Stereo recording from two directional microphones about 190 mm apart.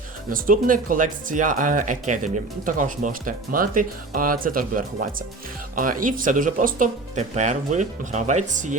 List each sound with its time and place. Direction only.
0.3 s speech: 45° right (ahead or behind)